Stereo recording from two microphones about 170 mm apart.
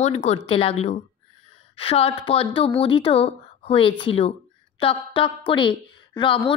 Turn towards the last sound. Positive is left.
turn(degrees=30)  # may be behind; listen again after turning